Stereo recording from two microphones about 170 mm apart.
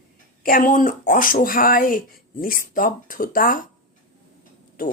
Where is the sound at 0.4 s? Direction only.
55° left (ahead or behind).